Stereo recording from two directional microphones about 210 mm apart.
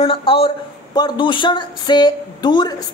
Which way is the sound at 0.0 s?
25° left (ahead or behind).